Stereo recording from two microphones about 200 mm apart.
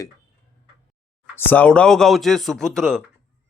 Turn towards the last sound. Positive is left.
turn(degrees=5)  # may be behind; listen again after turning